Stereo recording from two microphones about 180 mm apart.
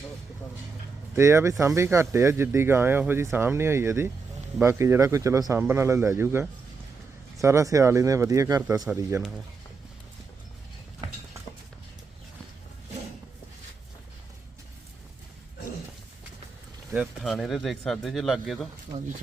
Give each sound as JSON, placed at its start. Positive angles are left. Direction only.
{"t": 1.1, "sound": "speech", "side_deg": -15}
{"t": 16.9, "sound": "speech", "side_deg": 0}